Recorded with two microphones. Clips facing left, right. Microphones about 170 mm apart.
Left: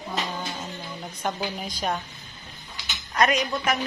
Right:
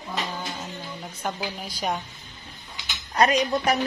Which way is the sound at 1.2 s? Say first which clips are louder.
Left 2 dB; 5° right (ahead or behind).